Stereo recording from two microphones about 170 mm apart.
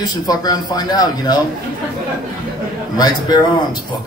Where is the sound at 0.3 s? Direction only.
25° left (ahead or behind).